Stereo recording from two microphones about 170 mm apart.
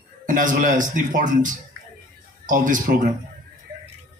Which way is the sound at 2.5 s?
50° right (ahead or behind).